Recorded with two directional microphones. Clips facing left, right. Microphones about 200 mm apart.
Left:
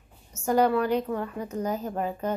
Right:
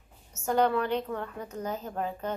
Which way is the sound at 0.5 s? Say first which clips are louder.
Left 3 dB; 10° left (ahead or behind).